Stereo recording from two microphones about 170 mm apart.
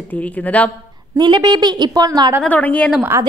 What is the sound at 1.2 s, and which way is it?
A woman's voice, 25° right (ahead or behind).